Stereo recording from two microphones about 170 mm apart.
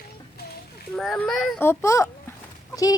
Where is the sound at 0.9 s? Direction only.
5° left (ahead or behind).